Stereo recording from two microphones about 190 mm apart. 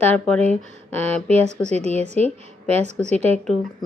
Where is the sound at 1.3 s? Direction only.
35° right (ahead or behind).